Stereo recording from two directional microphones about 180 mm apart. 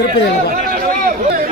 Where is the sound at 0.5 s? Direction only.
50° right (ahead or behind).